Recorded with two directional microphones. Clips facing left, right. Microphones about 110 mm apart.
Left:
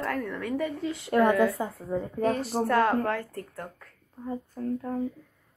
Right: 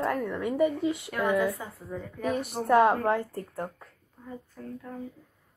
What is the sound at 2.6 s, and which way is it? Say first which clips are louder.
A woman's voice: right 4 dB; 20° right (ahead or behind).